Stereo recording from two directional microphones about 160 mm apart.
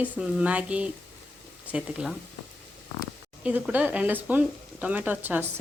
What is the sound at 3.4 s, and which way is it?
Speech, 10° right (ahead or behind).